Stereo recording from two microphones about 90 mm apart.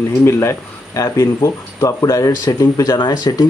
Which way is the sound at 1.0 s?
35° left (ahead or behind).